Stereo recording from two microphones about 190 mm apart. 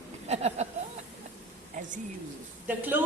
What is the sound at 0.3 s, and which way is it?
Speech, 35° right (ahead or behind).